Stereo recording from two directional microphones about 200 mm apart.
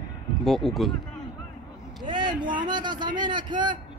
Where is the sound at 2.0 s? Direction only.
25° right (ahead or behind).